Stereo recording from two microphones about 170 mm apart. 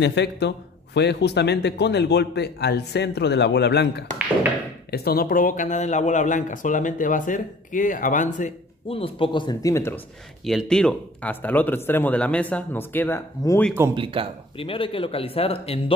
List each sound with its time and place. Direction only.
0.0 s a man's voice: 90° left
4.9 s speech: 65° left (ahead or behind); by 8.5 s 45° left (ahead or behind)
8.8 s speech: 35° left (ahead or behind); by 9.9 s 20° left (ahead or behind)
10.4 s speech: centre (ahead or behind); by 13.6 s 15° left (ahead or behind)
13.9 s speech: 30° right (ahead or behind)
14.6 s speech: 30° left (ahead or behind)